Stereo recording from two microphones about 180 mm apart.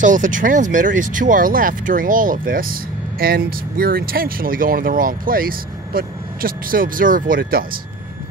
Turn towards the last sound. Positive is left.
turn(degrees=-55)  # may be behind; listen again after turning